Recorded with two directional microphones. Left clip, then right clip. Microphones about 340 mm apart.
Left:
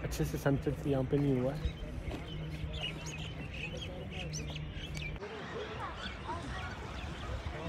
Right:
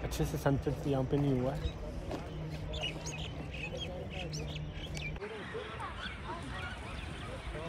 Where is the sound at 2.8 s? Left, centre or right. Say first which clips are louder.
Right 1 dB; right.